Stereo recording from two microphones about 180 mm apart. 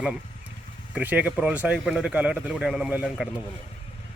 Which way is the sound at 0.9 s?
10° right (ahead or behind).